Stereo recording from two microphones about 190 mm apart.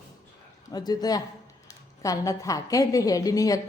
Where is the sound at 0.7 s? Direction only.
20° left (ahead or behind).